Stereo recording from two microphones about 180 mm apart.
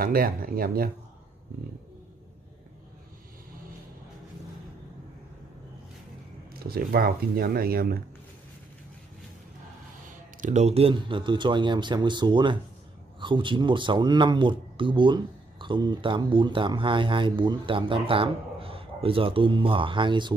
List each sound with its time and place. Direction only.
0.0 s speech: 55° right (ahead or behind)
6.5 s speech: 55° right (ahead or behind)
10.0 s speech: 40° right (ahead or behind); by 20.3 s 25° right (ahead or behind)